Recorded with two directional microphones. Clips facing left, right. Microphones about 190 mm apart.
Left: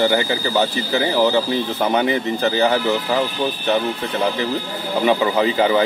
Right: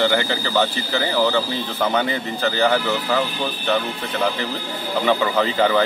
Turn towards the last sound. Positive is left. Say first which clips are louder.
# left 2 dB
turn(degrees=15)  # may be behind; listen again after turning